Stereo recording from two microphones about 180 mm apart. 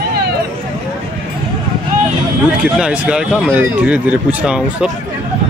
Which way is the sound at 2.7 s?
5° right (ahead or behind).